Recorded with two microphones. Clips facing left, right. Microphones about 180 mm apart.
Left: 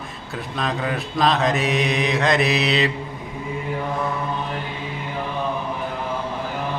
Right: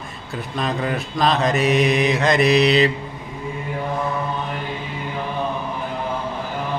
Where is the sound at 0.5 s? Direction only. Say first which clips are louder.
Right 2 dB; centre (ahead or behind).